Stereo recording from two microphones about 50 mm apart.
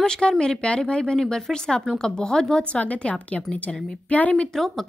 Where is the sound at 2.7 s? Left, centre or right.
Left.